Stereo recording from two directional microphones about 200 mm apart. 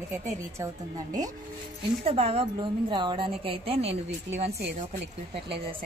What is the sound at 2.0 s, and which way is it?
A woman's voice, 30° right (ahead or behind).